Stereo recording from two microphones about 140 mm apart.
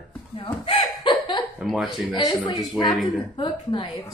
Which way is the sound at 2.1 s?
30° left (ahead or behind).